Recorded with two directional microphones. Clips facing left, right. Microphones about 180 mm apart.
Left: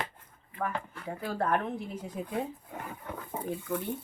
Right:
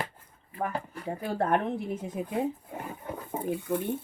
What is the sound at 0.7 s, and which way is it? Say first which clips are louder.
Speech: right 3 dB; 35° right (ahead or behind).